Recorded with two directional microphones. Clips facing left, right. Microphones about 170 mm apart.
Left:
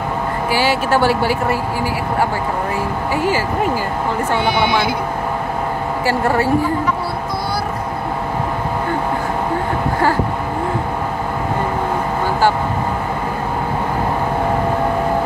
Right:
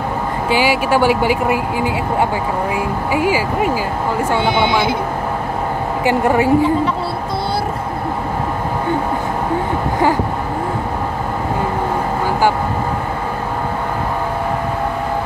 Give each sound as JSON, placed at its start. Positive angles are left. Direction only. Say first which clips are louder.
{"t": 0.5, "sound": "speech", "louder": "right 2 dB", "side_deg": -15}
{"t": 3.1, "sound": "speech", "louder": "right 2 dB", "side_deg": -10}
{"t": 4.6, "sound": "speech", "louder": "right 1 dB", "side_deg": -20}
{"t": 6.0, "sound": "speech", "louder": "right 3 dB", "side_deg": -15}